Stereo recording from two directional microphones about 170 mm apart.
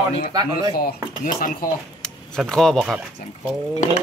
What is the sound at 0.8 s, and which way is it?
Speech, 60° left (ahead or behind).